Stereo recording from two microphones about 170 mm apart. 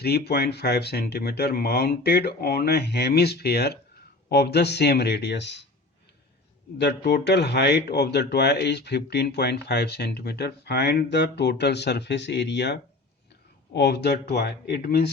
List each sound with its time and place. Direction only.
0.0 s speech: 70° left (ahead or behind); by 5.5 s 85° left
6.7 s speech: 75° left (ahead or behind)